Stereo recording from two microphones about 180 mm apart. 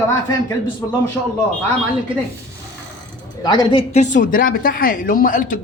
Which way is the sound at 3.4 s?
25° left (ahead or behind).